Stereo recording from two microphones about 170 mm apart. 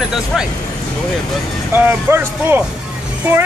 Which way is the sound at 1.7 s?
10° right (ahead or behind).